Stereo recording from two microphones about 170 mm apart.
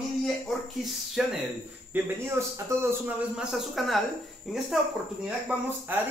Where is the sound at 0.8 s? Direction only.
Centre (ahead or behind).